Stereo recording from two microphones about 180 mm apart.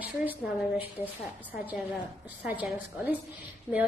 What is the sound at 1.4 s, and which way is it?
A woman's voice, 5° right (ahead or behind).